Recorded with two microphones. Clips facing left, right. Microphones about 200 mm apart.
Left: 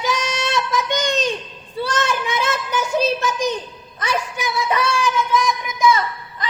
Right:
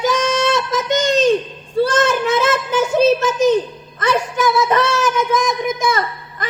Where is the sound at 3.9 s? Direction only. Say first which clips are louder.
Right 6 dB; 50° right (ahead or behind).